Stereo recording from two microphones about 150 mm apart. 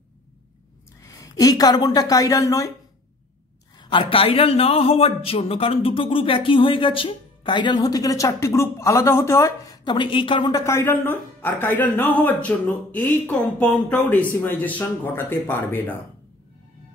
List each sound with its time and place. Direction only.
1.0 s a woman's voice: 25° left (ahead or behind)
3.7 s speech: 30° left (ahead or behind)
10.6 s speech: 15° left (ahead or behind)